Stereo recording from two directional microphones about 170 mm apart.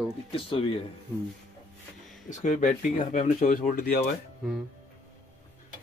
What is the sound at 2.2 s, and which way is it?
Speech, 45° left (ahead or behind).